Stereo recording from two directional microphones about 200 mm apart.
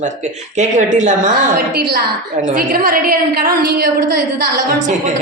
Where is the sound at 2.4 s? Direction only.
45° right (ahead or behind).